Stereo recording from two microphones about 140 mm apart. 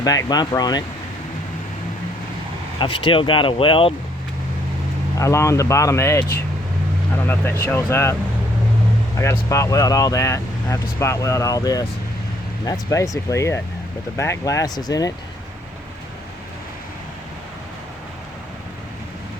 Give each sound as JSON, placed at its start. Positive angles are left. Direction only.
{"t": 0.0, "sound": "speech", "side_deg": 25}
{"t": 2.7, "sound": "speech", "side_deg": 35}
{"t": 5.2, "sound": "speech", "side_deg": 20}
{"t": 9.1, "sound": "speech", "side_deg": 20}